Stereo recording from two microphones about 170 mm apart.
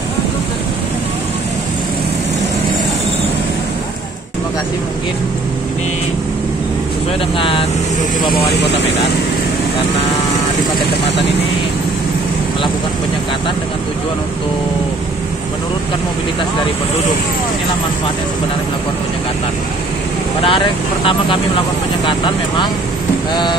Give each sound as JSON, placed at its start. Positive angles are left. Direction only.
{"t": 7.3, "sound": "speech", "side_deg": 30}
{"t": 20.4, "sound": "speech", "side_deg": 30}